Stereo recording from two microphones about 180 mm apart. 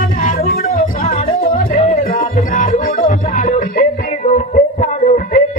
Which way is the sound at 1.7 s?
45° left (ahead or behind).